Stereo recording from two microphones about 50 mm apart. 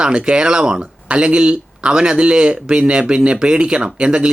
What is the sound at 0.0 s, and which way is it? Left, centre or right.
Speech, centre.